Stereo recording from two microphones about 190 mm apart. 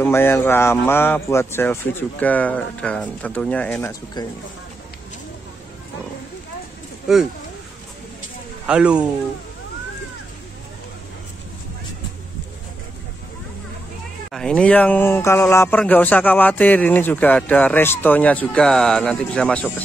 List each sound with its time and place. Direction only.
0.0 s speech: 10° left (ahead or behind)
4.2 s speech: 20° left (ahead or behind)
8.6 s speech: 5° right (ahead or behind)
14.3 s speech: 5° left (ahead or behind)